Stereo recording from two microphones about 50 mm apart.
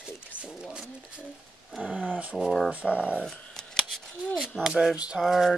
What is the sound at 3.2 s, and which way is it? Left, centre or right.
Scissors, centre.